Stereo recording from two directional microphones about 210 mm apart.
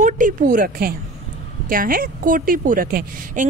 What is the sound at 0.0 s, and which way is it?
A woman's voice, 40° right (ahead or behind).